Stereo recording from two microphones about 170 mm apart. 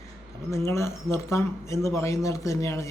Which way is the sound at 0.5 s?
15° left (ahead or behind).